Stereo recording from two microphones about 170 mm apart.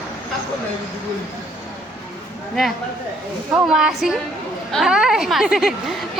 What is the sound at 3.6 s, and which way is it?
A woman's voice, 5° right (ahead or behind).